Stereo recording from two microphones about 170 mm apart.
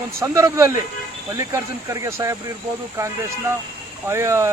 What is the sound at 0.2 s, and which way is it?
Speech, 15° right (ahead or behind).